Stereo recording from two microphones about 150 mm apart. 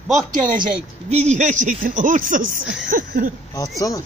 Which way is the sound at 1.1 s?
50° right (ahead or behind).